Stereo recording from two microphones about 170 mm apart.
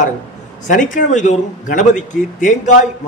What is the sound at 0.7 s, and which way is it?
A man's voice, 50° left (ahead or behind).